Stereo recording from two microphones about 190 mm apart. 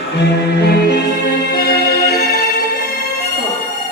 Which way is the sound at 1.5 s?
55° left (ahead or behind).